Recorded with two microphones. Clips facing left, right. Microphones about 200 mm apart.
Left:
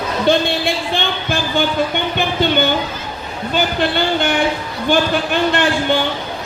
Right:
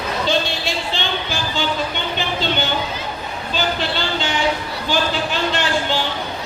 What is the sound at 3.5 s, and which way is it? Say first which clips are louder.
Speech: left 5 dB; 55° left (ahead or behind).